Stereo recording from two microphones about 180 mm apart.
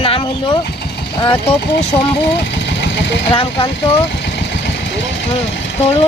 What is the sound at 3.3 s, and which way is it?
Speech, 30° left (ahead or behind).